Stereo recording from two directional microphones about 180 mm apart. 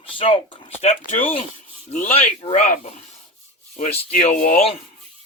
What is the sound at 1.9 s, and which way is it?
Speech, 40° left (ahead or behind).